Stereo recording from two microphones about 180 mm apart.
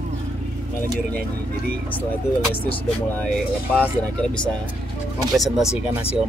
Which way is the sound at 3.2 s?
5° left (ahead or behind).